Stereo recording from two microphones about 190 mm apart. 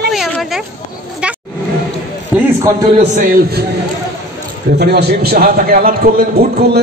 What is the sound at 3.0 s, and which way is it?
Speech, 45° right (ahead or behind).